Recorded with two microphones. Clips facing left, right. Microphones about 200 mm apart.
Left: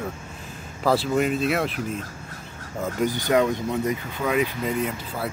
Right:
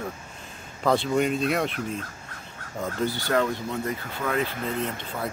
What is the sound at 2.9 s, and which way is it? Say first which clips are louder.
Speech: left 4 dB; 15° left (ahead or behind).